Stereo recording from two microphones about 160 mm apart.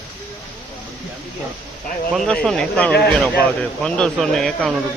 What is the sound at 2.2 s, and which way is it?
Speech, 5° left (ahead or behind).